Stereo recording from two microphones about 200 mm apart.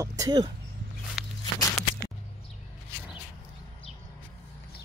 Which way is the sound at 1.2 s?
5° right (ahead or behind).